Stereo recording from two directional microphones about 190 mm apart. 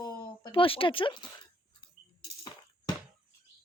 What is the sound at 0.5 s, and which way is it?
Speech, 30° left (ahead or behind).